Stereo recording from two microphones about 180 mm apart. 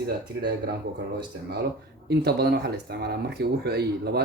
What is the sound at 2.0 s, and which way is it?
Speech, 65° right (ahead or behind).